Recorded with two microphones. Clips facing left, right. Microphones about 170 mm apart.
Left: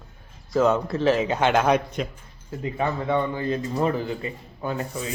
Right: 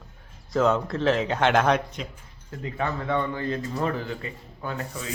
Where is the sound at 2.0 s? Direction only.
55° left (ahead or behind).